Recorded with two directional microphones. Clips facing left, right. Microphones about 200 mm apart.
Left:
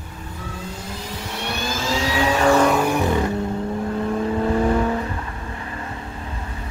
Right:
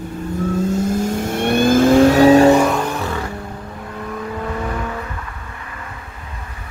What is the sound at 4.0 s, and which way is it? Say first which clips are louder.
Vehicle: left 3 dB; 30° left (ahead or behind).